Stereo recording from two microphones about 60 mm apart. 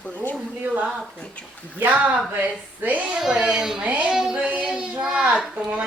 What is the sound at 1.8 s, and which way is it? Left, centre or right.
Speech, right.